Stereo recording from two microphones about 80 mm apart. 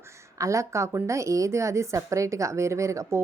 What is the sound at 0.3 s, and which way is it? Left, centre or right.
A woman's voice, right.